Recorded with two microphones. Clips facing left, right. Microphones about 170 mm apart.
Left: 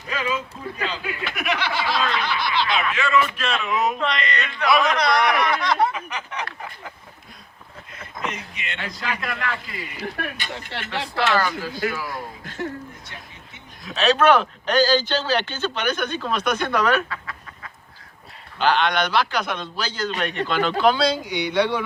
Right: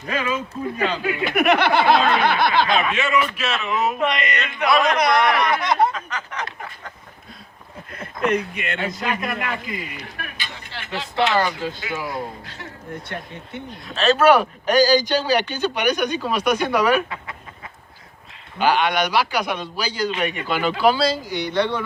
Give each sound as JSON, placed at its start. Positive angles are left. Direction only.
{"t": 0.1, "sound": "speech", "side_deg": -50}
{"t": 2.8, "sound": "a man's voice", "side_deg": -20}
{"t": 3.3, "sound": "speech", "side_deg": -5}
{"t": 3.9, "sound": "a man's voice", "side_deg": -20}
{"t": 5.9, "sound": "a sound", "side_deg": 10}
{"t": 7.9, "sound": "speech", "side_deg": -55}
{"t": 8.8, "sound": "a man's voice", "side_deg": -20}
{"t": 10.7, "sound": "speech", "side_deg": 65}
{"t": 11.1, "sound": "a man's voice", "side_deg": -20}
{"t": 12.6, "sound": "speech", "side_deg": 45}
{"t": 13.1, "sound": "speech", "side_deg": -60}
{"t": 13.8, "sound": "speech", "side_deg": 0}
{"t": 18.6, "sound": "speech", "side_deg": -10}